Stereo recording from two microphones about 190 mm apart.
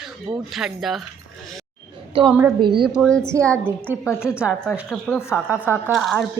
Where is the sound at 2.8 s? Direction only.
Centre (ahead or behind).